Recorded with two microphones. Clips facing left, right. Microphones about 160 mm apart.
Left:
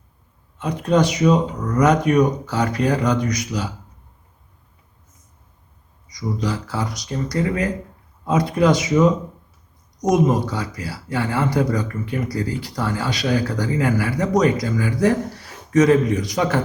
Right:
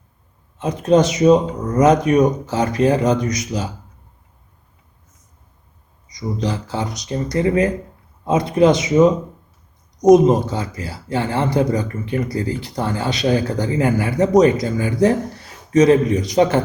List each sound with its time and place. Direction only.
0.6 s speech: 25° right (ahead or behind)
6.1 s speech: 20° right (ahead or behind)
10.2 s speech: 25° right (ahead or behind)